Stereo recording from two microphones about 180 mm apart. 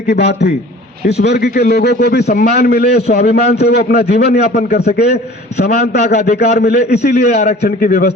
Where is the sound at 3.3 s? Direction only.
65° left (ahead or behind).